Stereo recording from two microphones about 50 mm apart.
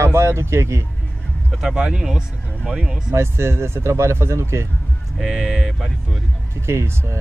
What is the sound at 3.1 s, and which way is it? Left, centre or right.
Speech, right.